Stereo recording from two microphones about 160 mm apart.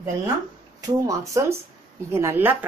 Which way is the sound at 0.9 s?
20° right (ahead or behind).